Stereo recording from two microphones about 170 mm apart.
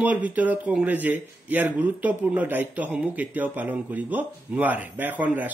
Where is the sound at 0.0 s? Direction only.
10° right (ahead or behind).